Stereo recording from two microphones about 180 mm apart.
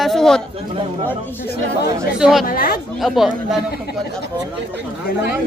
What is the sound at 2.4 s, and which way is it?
Speech, 55° left (ahead or behind).